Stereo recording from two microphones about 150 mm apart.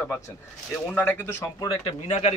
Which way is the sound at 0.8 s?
10° left (ahead or behind).